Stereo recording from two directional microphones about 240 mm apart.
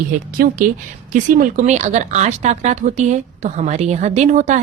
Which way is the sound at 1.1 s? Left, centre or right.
Right.